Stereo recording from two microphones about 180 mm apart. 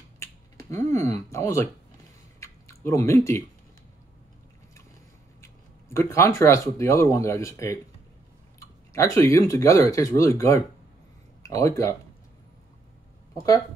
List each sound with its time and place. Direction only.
0.2 s finger snapping: 15° left (ahead or behind)
2.4 s drip: 15° left (ahead or behind)
5.4 s speech: 15° left (ahead or behind)